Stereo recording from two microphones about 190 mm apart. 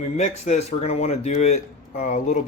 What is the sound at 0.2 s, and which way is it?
Speech, 35° left (ahead or behind).